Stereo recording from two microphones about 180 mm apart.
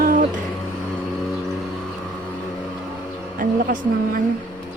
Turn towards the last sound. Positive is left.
turn(degrees=-50)  # may be behind; listen again after turning